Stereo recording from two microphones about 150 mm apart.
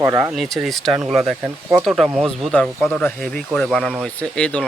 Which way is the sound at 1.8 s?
Centre (ahead or behind).